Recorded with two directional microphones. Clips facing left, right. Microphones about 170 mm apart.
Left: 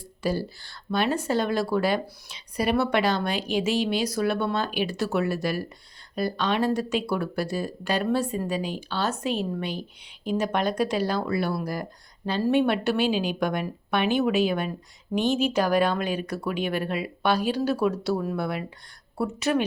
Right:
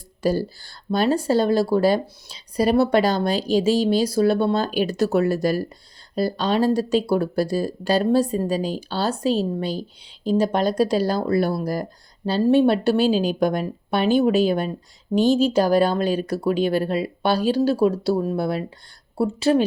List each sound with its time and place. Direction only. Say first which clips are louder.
0.2 s speech: right 6 dB; 40° right (ahead or behind)